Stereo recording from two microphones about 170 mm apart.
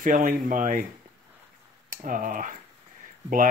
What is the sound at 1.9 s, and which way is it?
Speech, 50° right (ahead or behind).